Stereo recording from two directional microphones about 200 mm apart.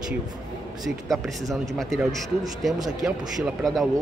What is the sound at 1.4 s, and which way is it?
Speech, 15° right (ahead or behind).